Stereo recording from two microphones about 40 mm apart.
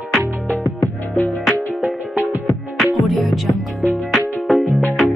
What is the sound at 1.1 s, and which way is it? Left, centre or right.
Music, left.